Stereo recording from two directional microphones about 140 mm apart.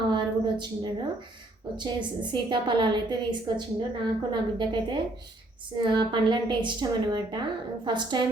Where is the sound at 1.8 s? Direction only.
35° right (ahead or behind).